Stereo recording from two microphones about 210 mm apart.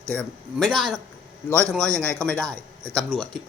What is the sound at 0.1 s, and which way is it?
Speech, 5° left (ahead or behind).